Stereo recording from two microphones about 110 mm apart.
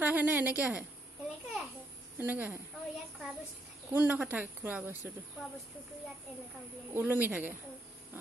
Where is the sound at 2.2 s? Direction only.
15° right (ahead or behind).